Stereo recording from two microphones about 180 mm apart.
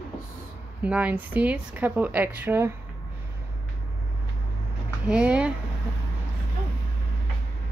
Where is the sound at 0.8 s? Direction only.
5° right (ahead or behind).